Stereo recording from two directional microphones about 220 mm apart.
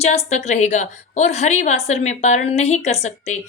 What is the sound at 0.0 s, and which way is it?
A woman's voice, 30° left (ahead or behind).